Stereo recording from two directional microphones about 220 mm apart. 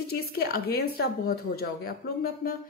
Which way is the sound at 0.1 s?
45° left (ahead or behind).